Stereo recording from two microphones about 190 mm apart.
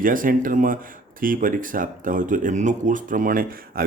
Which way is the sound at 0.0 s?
45° right (ahead or behind).